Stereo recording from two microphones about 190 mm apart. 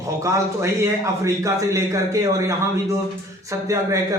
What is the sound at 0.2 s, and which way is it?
A man's voice, 15° right (ahead or behind).